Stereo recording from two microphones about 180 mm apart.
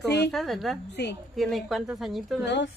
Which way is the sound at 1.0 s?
70° left (ahead or behind).